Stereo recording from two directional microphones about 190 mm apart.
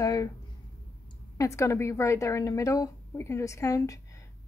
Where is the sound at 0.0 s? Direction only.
20° left (ahead or behind).